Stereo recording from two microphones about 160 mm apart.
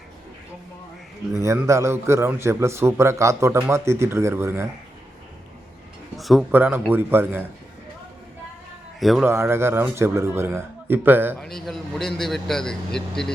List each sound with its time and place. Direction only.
1.3 s a man's voice: 20° right (ahead or behind)
6.1 s a man's voice: centre (ahead or behind)
6.5 s a man's voice: 10° right (ahead or behind)
9.0 s speech: centre (ahead or behind)
9.2 s a man's voice: 15° right (ahead or behind)
11.3 s speech: centre (ahead or behind)